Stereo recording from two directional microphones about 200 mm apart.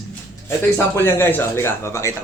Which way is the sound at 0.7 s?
10° left (ahead or behind).